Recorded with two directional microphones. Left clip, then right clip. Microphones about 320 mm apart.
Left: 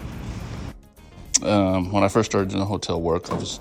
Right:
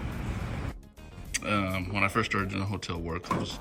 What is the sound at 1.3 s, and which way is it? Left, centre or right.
A man's voice, centre.